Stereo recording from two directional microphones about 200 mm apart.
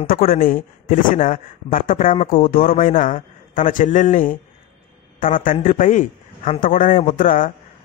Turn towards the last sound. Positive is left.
turn(degrees=40)  # may be behind; listen again after turning